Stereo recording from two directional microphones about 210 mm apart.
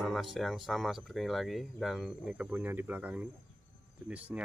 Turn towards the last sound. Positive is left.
turn(degrees=-5)  # may be behind; listen again after turning